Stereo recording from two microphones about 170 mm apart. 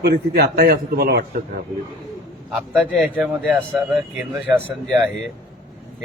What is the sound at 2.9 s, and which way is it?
Speech, centre (ahead or behind).